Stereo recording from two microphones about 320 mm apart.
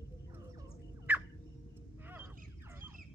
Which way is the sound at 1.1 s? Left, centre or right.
Centre.